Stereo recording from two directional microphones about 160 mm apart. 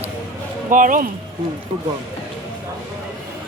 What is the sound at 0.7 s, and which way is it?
Speech, 55° right (ahead or behind).